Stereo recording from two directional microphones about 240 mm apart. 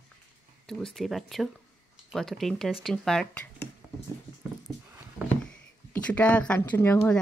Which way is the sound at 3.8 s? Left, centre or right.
Centre.